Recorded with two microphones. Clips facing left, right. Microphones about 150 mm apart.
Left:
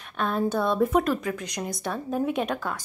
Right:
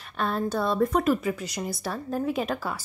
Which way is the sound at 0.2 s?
Centre (ahead or behind).